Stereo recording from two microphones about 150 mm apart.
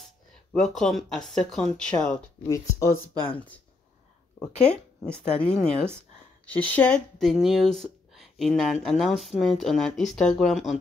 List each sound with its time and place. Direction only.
0.5 s speech: 5° left (ahead or behind)
2.4 s speech: 20° left (ahead or behind)
3.3 s speech: 10° left (ahead or behind)
4.6 s speech: 10° left (ahead or behind)